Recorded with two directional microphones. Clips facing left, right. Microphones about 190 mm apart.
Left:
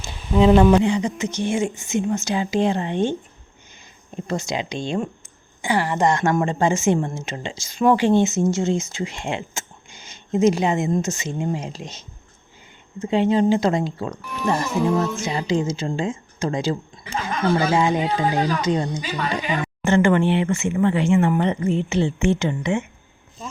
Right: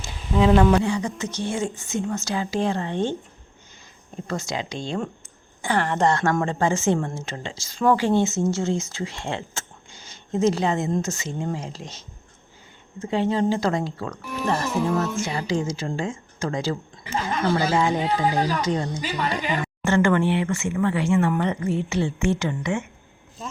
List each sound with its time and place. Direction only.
0.0 s speech: 25° left (ahead or behind)
4.3 s speech: 20° left (ahead or behind)